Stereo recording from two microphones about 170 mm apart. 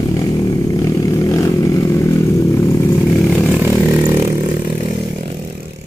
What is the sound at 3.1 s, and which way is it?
Chainsaw, 10° left (ahead or behind).